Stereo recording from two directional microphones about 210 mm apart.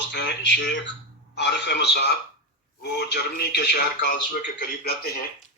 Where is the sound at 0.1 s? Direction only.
55° left (ahead or behind).